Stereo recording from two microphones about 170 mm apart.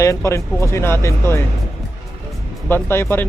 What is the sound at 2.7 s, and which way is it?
Speech, 15° left (ahead or behind).